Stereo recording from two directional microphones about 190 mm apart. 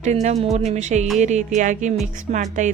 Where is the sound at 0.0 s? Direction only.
35° right (ahead or behind).